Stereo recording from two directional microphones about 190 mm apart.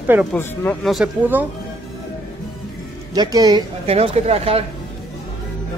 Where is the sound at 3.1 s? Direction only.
20° right (ahead or behind).